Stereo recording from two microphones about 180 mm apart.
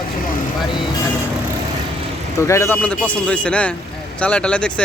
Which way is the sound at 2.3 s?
15° left (ahead or behind).